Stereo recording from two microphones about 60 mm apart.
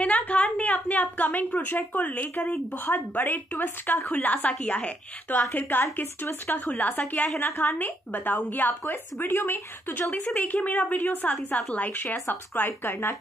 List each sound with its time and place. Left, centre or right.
0.0 s a woman's voice: left
6.7 s a woman's voice: left
10.1 s a woman's voice: left